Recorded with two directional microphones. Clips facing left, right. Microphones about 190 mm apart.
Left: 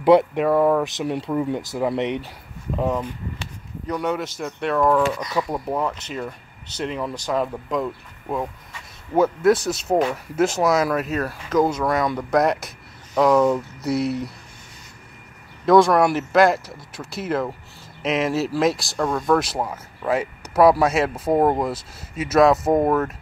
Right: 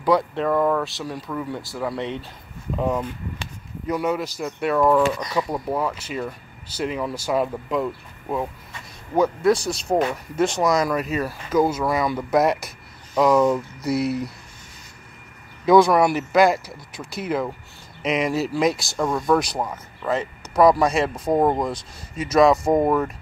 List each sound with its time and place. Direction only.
0.0 s speech: 25° left (ahead or behind)
0.3 s speech: 10° left (ahead or behind)
3.8 s speech: 5° right (ahead or behind)
15.6 s speech: centre (ahead or behind)